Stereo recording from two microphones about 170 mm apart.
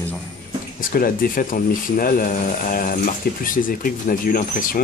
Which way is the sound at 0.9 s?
55° left (ahead or behind).